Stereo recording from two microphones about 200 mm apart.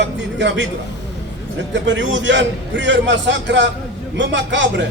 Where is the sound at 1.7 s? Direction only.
65° right (ahead or behind).